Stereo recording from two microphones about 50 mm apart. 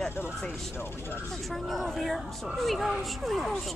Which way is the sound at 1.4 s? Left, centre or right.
Centre.